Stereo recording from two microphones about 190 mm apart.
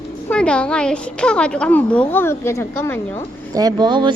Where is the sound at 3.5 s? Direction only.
20° right (ahead or behind).